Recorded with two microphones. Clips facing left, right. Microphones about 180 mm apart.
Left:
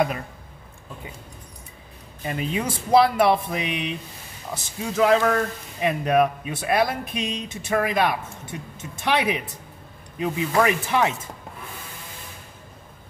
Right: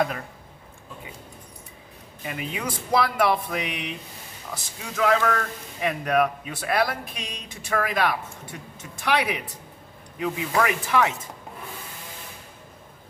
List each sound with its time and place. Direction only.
2.2 s a man's voice: 30° left (ahead or behind)
4.9 s a man's voice: 30° left (ahead or behind)